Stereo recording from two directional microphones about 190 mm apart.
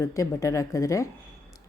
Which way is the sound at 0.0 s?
15° left (ahead or behind).